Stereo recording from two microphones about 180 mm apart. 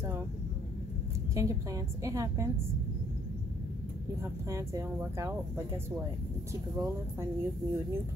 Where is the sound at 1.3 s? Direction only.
15° right (ahead or behind).